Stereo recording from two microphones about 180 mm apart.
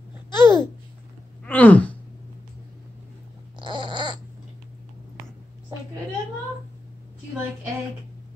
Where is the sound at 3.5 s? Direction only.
25° right (ahead or behind).